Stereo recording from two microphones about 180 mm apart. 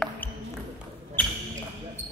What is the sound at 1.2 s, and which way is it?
Basketball bounce, 10° left (ahead or behind).